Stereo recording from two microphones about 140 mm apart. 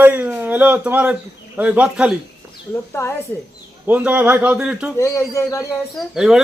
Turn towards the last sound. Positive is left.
turn(degrees=-5)  # may be behind; listen again after turning